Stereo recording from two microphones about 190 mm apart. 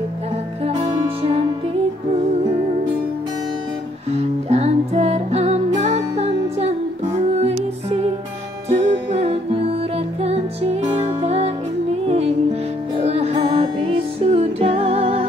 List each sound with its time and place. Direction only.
0.7 s music: 25° right (ahead or behind)
4.1 s music: 35° right (ahead or behind)